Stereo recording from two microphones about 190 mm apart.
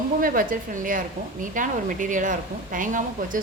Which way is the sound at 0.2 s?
50° right (ahead or behind).